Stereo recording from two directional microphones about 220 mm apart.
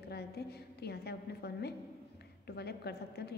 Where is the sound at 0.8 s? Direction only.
45° left (ahead or behind).